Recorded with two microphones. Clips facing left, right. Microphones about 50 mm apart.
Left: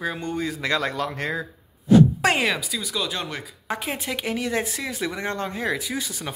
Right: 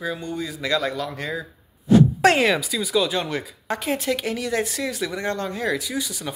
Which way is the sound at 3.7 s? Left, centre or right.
Centre.